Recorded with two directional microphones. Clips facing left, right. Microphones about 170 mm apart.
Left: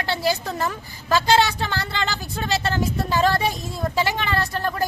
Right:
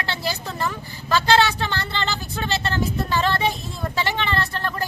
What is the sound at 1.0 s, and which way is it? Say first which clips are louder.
Speech: even; 10° left (ahead or behind).